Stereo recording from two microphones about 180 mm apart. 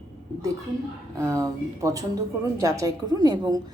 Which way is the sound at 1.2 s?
20° right (ahead or behind).